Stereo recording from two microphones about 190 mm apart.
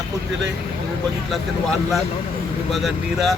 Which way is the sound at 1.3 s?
Centre (ahead or behind).